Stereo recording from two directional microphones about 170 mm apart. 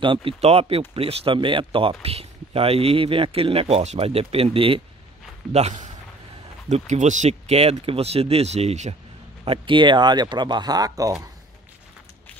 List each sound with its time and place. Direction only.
0.0 s speech: 30° right (ahead or behind)
9.4 s speech: 30° right (ahead or behind)